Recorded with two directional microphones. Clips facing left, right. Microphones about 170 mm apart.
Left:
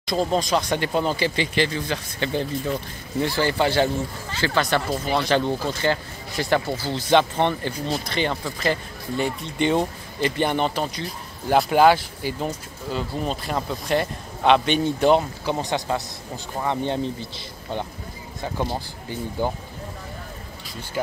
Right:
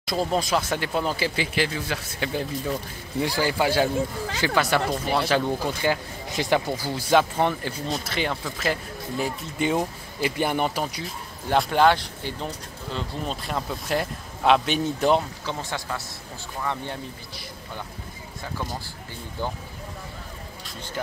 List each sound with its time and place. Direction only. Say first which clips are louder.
0.0 s speech: left 2 dB; 5° right (ahead or behind)
15.4 s speech: left 6 dB; 20° left (ahead or behind)